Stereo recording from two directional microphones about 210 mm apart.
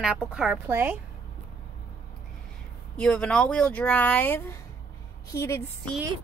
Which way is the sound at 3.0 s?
5° left (ahead or behind).